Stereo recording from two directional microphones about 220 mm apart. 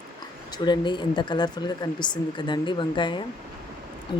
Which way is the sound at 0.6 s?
20° left (ahead or behind).